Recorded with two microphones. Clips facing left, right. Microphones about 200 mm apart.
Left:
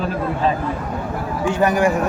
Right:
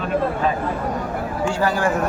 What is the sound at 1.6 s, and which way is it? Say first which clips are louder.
Speech: left 5 dB; 15° left (ahead or behind).